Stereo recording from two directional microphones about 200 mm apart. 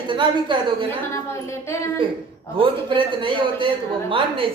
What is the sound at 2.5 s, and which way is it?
A man's voice, 25° right (ahead or behind).